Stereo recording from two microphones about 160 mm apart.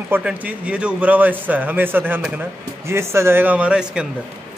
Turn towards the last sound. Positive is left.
turn(degrees=-5)  # may be behind; listen again after turning